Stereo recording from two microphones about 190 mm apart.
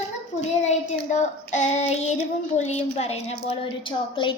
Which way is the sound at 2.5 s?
35° left (ahead or behind).